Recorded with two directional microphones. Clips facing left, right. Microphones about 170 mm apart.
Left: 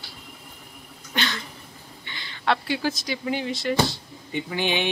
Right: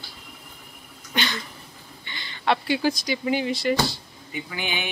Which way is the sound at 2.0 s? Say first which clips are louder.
Right 1 dB; centre (ahead or behind).